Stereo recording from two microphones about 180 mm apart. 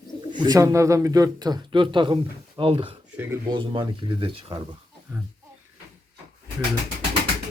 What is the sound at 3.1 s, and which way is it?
Speech, 10° right (ahead or behind).